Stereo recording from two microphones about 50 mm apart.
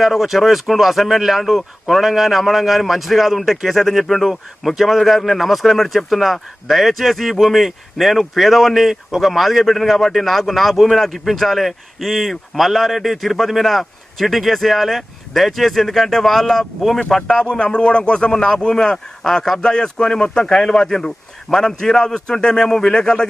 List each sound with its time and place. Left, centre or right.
0.0 s speech: centre